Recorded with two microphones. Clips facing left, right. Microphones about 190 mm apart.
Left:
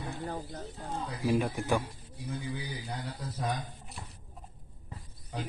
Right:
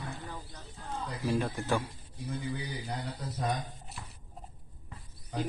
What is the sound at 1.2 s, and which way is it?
Speech, 15° left (ahead or behind).